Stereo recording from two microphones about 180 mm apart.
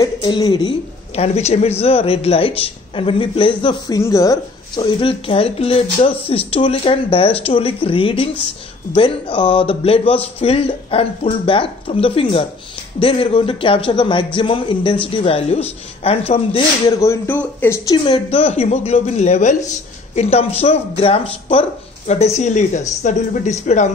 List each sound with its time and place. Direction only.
0.0 s speech: 25° left (ahead or behind)
17.0 s speech: 15° left (ahead or behind)
17.9 s speech: 25° left (ahead or behind)